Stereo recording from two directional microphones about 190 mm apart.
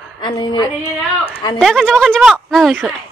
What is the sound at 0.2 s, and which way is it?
Female singing, 25° left (ahead or behind).